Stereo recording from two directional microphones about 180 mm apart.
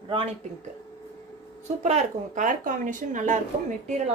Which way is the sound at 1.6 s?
40° right (ahead or behind).